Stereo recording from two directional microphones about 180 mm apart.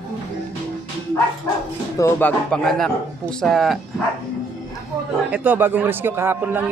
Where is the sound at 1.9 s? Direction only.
15° left (ahead or behind).